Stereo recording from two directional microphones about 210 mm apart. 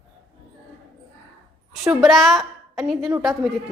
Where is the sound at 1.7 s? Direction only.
Centre (ahead or behind).